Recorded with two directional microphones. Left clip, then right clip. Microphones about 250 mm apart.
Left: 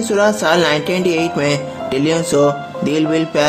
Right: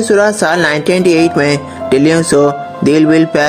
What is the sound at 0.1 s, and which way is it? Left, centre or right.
Music, right.